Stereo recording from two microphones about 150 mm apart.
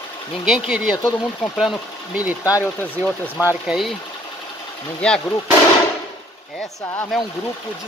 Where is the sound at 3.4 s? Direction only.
5° right (ahead or behind).